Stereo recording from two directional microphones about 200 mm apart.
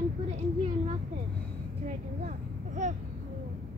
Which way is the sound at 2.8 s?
35° right (ahead or behind).